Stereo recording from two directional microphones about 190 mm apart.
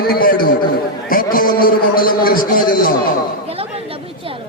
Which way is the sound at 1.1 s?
50° left (ahead or behind).